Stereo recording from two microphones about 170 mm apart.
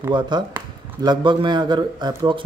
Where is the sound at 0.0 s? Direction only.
25° right (ahead or behind).